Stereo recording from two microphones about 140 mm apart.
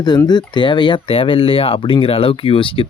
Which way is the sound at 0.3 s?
30° left (ahead or behind).